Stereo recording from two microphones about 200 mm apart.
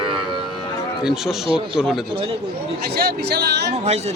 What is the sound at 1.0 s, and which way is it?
Speech, centre (ahead or behind).